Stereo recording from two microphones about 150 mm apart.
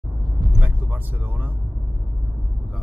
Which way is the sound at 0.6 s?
10° right (ahead or behind).